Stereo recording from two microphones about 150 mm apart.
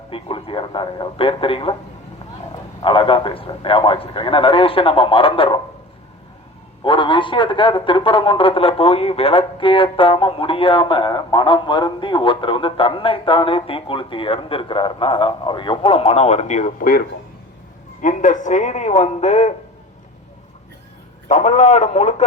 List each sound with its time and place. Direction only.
0.1 s a man's voice: 35° left (ahead or behind)
2.8 s a man's voice: 35° left (ahead or behind)
6.8 s a man's voice: 35° left (ahead or behind); by 17.0 s 60° left (ahead or behind)
18.0 s speech: 55° left (ahead or behind)
21.2 s speech: 50° left (ahead or behind)